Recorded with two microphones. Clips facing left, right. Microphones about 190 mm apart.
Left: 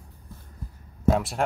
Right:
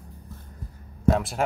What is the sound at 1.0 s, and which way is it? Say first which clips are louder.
Speech: even; centre (ahead or behind).